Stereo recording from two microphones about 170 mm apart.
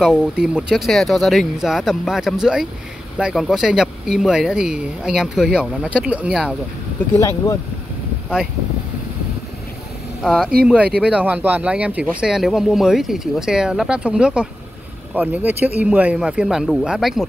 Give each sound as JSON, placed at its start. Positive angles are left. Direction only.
{"t": 0.0, "sound": "speech", "side_deg": -5}
{"t": 7.2, "sound": "speech", "side_deg": 15}
{"t": 10.2, "sound": "speech", "side_deg": 0}